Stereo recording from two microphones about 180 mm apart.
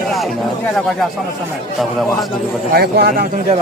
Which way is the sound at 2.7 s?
60° right (ahead or behind).